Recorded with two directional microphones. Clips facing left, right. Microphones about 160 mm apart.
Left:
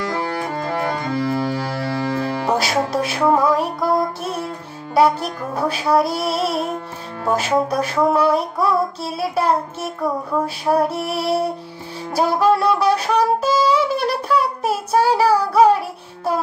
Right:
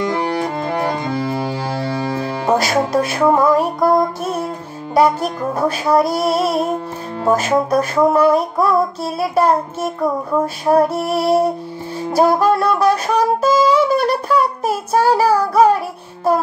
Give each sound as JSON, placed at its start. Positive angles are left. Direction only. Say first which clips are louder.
{"t": 0.0, "sound": "music", "louder": "right 4 dB", "side_deg": -25}
{"t": 2.5, "sound": "music", "louder": "right 5 dB", "side_deg": -50}
{"t": 4.9, "sound": "child singing", "louder": "right 2 dB", "side_deg": -45}
{"t": 12.1, "sound": "music", "louder": "right 3 dB", "side_deg": -45}